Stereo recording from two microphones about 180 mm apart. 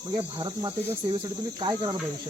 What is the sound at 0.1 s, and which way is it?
Speech, 30° right (ahead or behind).